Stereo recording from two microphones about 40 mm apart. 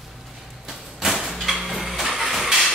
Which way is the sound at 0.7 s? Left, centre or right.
Centre.